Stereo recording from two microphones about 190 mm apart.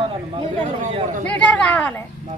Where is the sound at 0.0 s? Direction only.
30° right (ahead or behind).